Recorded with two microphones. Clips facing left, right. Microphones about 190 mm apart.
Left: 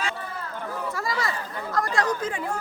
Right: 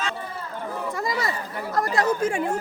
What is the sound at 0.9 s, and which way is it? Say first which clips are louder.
Chatter: right 3 dB; 20° right (ahead or behind).